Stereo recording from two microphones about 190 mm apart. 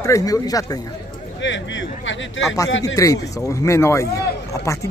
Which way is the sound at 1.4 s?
75° left (ahead or behind).